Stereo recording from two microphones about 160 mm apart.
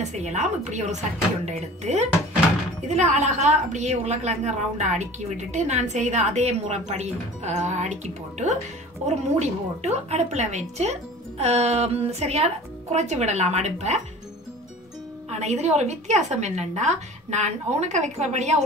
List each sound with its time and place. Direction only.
0.0 s a woman's voice: 45° right (ahead or behind)
15.2 s a woman's voice: 45° right (ahead or behind)